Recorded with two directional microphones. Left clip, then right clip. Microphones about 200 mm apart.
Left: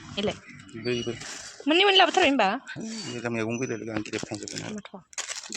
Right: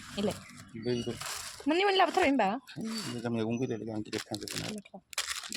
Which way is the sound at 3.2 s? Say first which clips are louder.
Left 5 dB; 15° left (ahead or behind).